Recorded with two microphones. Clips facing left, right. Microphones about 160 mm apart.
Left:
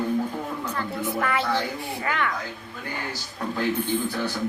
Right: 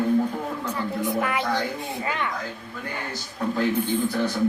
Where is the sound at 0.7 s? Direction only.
15° right (ahead or behind).